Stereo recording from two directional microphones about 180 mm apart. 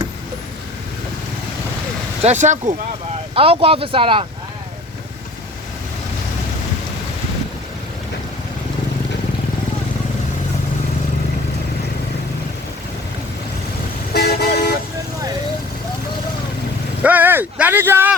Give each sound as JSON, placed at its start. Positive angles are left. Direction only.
{"t": 2.2, "sound": "speech", "side_deg": -40}
{"t": 14.1, "sound": "vehicle", "side_deg": 60}
{"t": 17.0, "sound": "a sound", "side_deg": -10}